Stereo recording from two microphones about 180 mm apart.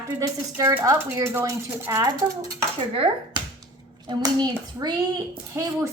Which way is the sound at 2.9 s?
30° right (ahead or behind).